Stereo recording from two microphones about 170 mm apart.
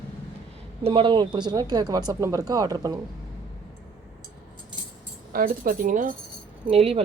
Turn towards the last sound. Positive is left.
turn(degrees=-35)  # may be behind; listen again after turning